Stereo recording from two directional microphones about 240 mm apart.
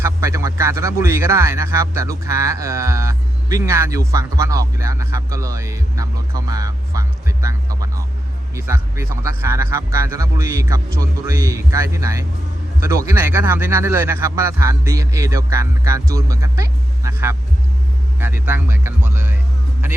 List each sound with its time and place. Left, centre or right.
0.0 s speech: centre
18.4 s speech: centre